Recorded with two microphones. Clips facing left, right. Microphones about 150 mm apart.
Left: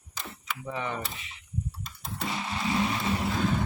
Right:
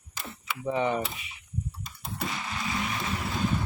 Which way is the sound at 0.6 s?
20° right (ahead or behind).